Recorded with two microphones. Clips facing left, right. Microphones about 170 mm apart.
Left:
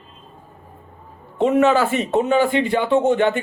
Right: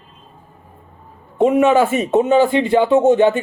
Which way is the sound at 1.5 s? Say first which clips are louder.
Right 2 dB; 15° right (ahead or behind).